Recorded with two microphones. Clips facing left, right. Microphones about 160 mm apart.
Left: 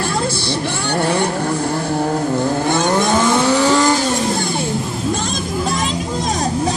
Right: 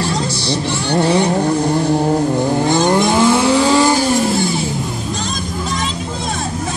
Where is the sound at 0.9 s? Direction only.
20° right (ahead or behind).